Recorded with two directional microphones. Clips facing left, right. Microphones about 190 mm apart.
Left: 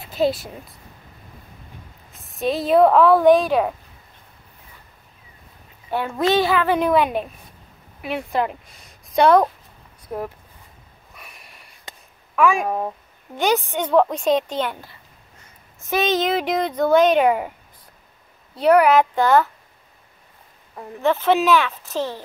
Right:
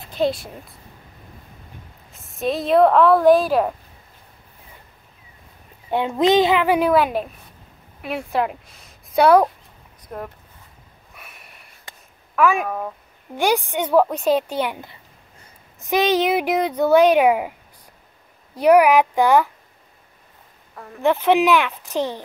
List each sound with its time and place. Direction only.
0.0 s speech: 5° left (ahead or behind)
2.1 s speech: centre (ahead or behind)
5.9 s a woman's voice: 20° right (ahead or behind)
10.0 s speech: 10° left (ahead or behind)
11.1 s sniff: centre (ahead or behind)
12.4 s speech: centre (ahead or behind)
12.6 s speech: 25° left (ahead or behind)
13.4 s speech: 10° right (ahead or behind)
21.0 s speech: 15° right (ahead or behind)